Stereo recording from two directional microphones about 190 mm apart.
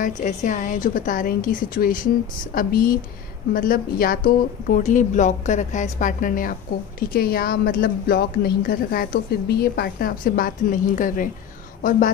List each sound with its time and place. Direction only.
0.0 s speech: 40° left (ahead or behind)